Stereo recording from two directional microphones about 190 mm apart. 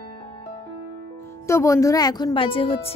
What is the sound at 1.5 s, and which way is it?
Speech, 15° left (ahead or behind).